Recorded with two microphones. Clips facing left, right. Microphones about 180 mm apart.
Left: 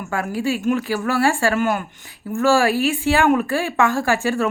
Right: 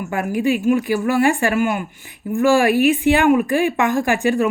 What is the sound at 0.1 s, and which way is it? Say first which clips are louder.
A woman's voice: right 3 dB; 20° right (ahead or behind).